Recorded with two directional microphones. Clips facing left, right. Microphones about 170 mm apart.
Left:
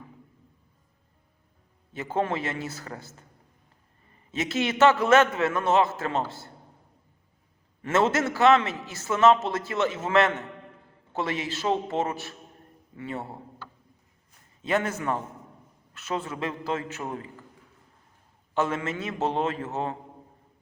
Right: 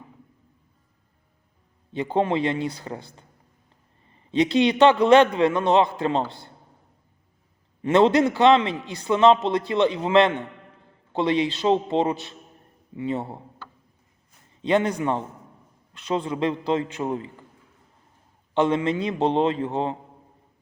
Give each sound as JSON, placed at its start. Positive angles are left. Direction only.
{"t": 1.9, "sound": "a man's voice", "side_deg": -25}
{"t": 4.5, "sound": "a man's voice", "side_deg": -25}
{"t": 5.3, "sound": "a man's voice", "side_deg": -20}
{"t": 7.8, "sound": "a man's voice", "side_deg": -20}
{"t": 14.7, "sound": "a man's voice", "side_deg": -25}
{"t": 18.5, "sound": "a man's voice", "side_deg": -30}